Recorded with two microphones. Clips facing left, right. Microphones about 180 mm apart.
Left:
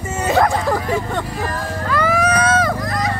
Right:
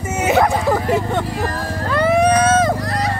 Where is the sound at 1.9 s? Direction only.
30° right (ahead or behind).